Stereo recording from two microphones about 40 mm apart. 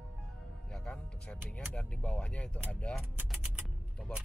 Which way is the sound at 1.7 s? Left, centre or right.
Left.